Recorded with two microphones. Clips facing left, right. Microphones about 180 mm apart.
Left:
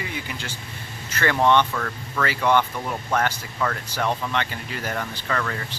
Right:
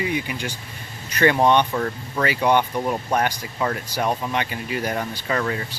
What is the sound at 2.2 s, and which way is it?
Speech, 15° right (ahead or behind).